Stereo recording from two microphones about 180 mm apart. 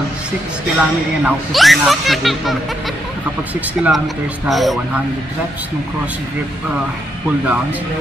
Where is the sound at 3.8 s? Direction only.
Centre (ahead or behind).